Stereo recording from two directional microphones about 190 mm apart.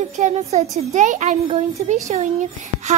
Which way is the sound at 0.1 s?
35° right (ahead or behind).